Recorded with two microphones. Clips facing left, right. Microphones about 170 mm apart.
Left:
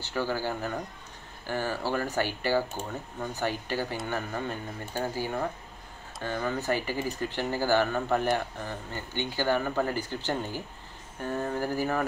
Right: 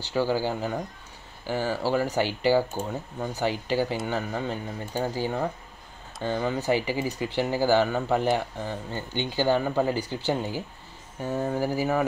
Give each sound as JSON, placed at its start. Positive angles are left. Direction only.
{"t": 0.1, "sound": "speech", "side_deg": -15}